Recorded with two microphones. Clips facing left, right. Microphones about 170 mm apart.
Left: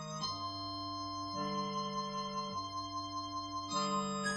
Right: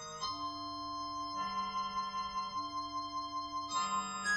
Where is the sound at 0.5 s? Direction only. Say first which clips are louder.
Left 1 dB; 25° left (ahead or behind).